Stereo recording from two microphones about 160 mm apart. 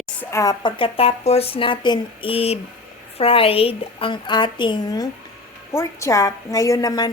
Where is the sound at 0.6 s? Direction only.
35° left (ahead or behind).